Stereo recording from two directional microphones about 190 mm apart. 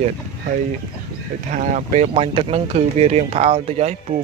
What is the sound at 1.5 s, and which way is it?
Speech, 40° right (ahead or behind).